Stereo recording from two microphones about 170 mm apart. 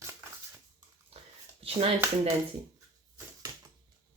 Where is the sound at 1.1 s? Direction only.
35° right (ahead or behind).